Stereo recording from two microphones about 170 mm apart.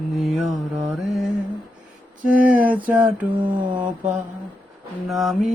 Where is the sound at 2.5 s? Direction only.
10° right (ahead or behind).